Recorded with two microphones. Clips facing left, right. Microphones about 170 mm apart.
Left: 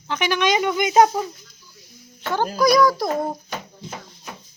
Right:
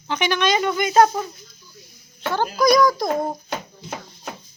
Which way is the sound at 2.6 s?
5° left (ahead or behind).